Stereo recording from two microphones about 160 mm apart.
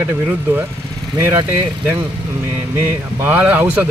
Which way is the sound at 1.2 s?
15° right (ahead or behind).